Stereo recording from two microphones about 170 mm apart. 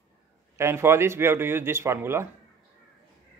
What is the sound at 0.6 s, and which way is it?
A man's voice, 15° right (ahead or behind).